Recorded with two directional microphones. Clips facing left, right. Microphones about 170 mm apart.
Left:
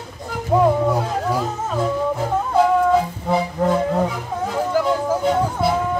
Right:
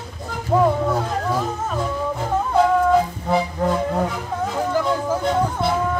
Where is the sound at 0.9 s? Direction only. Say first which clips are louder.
Left 1 dB; 10° left (ahead or behind).